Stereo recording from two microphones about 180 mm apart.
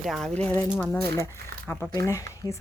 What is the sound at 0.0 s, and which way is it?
Speech, centre (ahead or behind).